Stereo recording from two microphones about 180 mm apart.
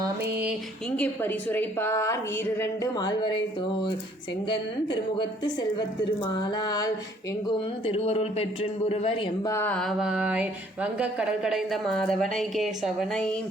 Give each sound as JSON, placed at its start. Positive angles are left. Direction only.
{"t": 0.9, "sound": "a woman's voice", "side_deg": 5}
{"t": 4.4, "sound": "a woman's voice", "side_deg": 25}
{"t": 7.9, "sound": "a woman's voice", "side_deg": 35}
{"t": 9.5, "sound": "mantra", "side_deg": 10}